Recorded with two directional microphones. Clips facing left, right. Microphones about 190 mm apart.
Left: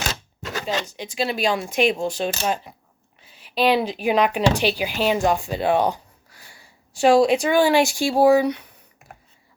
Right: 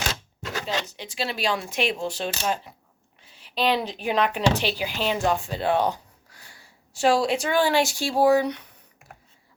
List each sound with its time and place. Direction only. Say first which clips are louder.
0.6 s speech: left 4 dB; 15° left (ahead or behind)